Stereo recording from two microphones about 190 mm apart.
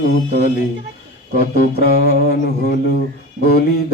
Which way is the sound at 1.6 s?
55° left (ahead or behind).